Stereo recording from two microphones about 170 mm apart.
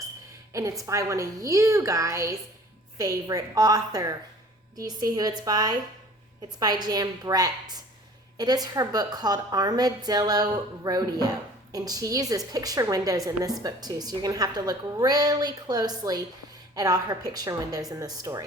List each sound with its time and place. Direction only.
0.5 s a woman's voice: 20° right (ahead or behind)